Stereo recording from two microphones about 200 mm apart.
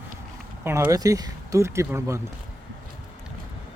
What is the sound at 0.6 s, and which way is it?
Speech, 15° right (ahead or behind).